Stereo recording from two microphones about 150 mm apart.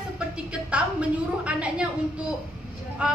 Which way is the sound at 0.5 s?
5° right (ahead or behind).